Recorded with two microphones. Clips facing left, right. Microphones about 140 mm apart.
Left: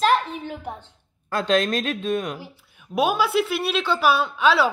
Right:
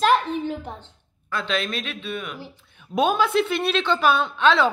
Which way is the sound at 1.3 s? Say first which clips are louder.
Left 5 dB; 40° left (ahead or behind).